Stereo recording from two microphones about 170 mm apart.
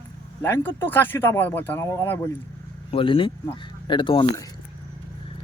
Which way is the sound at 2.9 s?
30° left (ahead or behind).